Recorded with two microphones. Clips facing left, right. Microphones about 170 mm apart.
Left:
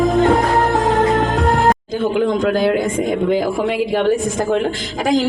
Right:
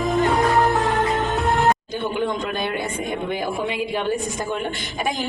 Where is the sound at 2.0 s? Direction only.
90° left.